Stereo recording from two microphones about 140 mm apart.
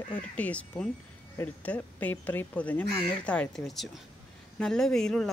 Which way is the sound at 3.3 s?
5° left (ahead or behind).